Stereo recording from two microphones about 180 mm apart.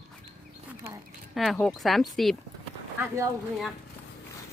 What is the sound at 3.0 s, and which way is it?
Speech, 15° right (ahead or behind).